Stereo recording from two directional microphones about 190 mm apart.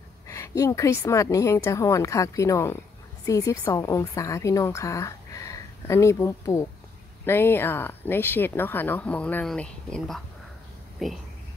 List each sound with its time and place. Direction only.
0.3 s a woman's voice: 15° left (ahead or behind); by 11.2 s centre (ahead or behind)